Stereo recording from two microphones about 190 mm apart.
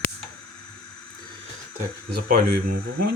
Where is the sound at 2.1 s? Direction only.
55° right (ahead or behind).